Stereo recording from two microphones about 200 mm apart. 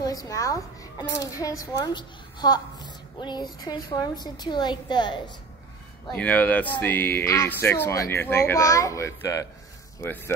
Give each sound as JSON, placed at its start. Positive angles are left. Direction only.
{"t": 0.0, "sound": "a child's voice", "side_deg": 20}
{"t": 6.1, "sound": "speech", "side_deg": 5}